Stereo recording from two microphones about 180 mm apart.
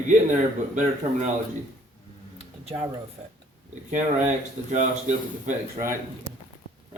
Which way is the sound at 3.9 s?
45° right (ahead or behind).